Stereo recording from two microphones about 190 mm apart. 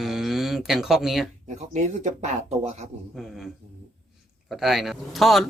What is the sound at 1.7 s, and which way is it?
Speech, 35° right (ahead or behind).